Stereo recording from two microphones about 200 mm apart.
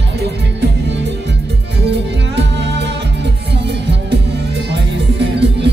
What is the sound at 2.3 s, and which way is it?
Music, 60° right (ahead or behind).